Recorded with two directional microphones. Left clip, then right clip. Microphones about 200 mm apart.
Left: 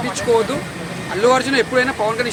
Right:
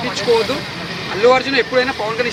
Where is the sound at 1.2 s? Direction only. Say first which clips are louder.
Right 2 dB; 20° left (ahead or behind).